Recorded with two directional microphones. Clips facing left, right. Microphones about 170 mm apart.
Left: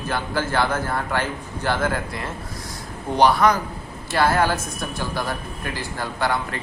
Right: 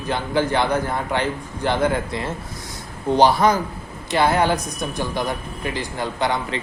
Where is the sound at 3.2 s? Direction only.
25° right (ahead or behind).